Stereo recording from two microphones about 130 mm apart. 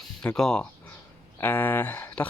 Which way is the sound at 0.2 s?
5° left (ahead or behind).